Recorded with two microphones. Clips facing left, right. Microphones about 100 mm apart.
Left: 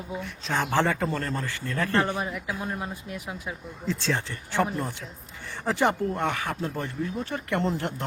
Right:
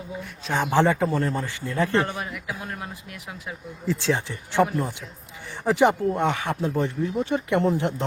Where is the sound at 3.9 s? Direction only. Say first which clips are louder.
Right 4 dB; 15° right (ahead or behind).